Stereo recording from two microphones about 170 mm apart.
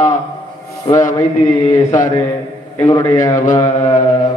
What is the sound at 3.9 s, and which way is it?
Speech, 50° left (ahead or behind).